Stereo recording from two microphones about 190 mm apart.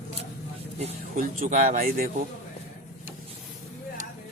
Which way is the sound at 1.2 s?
45° right (ahead or behind).